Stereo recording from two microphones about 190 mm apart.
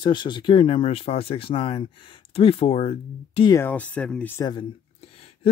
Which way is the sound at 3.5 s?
10° left (ahead or behind).